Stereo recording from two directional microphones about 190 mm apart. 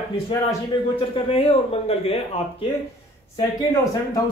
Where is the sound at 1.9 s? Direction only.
30° left (ahead or behind).